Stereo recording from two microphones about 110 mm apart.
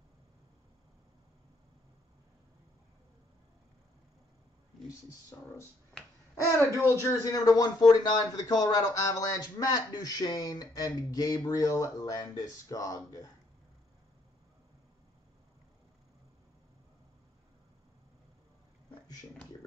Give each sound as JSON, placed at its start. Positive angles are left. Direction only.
{"t": 5.3, "sound": "speech", "side_deg": 25}